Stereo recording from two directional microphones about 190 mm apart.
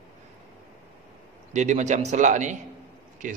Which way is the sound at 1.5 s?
40° right (ahead or behind).